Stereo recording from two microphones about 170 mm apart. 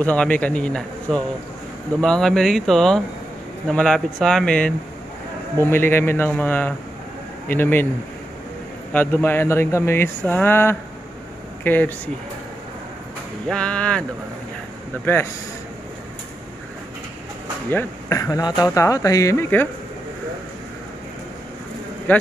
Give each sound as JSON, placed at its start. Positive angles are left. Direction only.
{"t": 0.0, "sound": "speech", "side_deg": 10}
{"t": 8.9, "sound": "speech", "side_deg": 10}
{"t": 13.5, "sound": "speech", "side_deg": 5}
{"t": 17.6, "sound": "speech", "side_deg": 15}
{"t": 22.1, "sound": "a man's voice", "side_deg": 10}